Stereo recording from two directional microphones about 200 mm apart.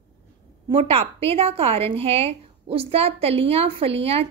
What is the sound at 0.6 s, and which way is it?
A woman's voice, 30° right (ahead or behind).